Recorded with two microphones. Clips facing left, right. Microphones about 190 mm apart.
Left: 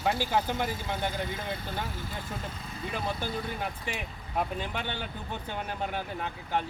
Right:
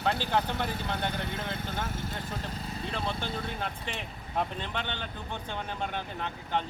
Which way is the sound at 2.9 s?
10° left (ahead or behind).